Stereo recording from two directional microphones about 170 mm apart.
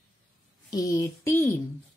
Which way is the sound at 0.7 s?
20° left (ahead or behind).